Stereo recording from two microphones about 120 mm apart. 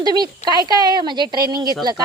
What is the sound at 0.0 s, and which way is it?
A woman's voice, 35° right (ahead or behind).